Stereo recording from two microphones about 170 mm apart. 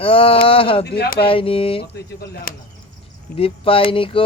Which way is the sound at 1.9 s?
65° left (ahead or behind).